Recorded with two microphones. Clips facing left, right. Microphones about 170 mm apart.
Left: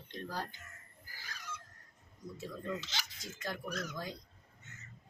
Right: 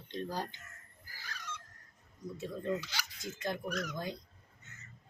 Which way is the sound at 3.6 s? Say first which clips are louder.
Right 3 dB; 30° left (ahead or behind).